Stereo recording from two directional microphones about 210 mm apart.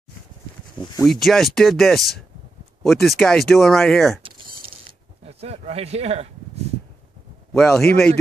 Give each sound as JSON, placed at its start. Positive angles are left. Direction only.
{"t": 0.7, "sound": "speech", "side_deg": 20}
{"t": 1.0, "sound": "speech", "side_deg": 0}
{"t": 4.2, "sound": "a sound", "side_deg": -25}
{"t": 5.2, "sound": "speech", "side_deg": -30}
{"t": 7.5, "sound": "speech", "side_deg": 0}